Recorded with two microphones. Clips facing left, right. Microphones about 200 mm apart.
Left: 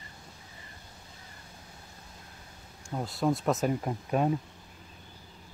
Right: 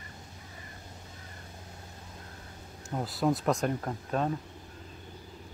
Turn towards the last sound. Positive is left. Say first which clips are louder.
# left 3 dB
turn(degrees=10)  # may be behind; listen again after turning